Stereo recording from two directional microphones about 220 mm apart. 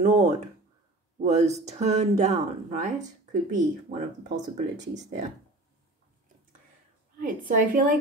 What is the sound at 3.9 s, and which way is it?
A woman's voice, 30° right (ahead or behind).